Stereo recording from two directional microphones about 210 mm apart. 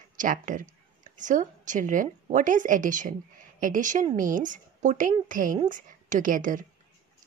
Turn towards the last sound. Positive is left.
turn(degrees=-40)  # may be behind; listen again after turning